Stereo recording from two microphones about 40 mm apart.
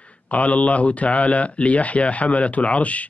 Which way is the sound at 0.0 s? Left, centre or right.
Left.